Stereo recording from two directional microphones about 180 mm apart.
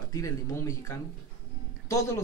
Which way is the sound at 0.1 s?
15° left (ahead or behind).